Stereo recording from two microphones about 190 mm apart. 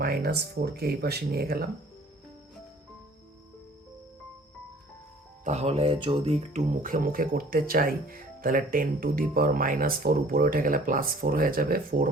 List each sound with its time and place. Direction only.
0.0 s speech: 55° right (ahead or behind)
5.5 s speech: 35° right (ahead or behind)